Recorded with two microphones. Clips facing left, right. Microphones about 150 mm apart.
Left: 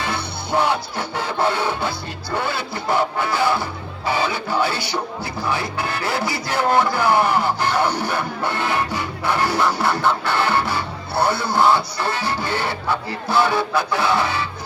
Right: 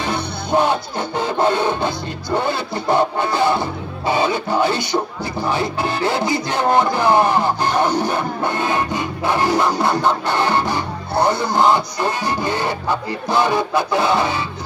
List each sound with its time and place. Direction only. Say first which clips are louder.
0.0 s music: right 3 dB; 20° right (ahead or behind)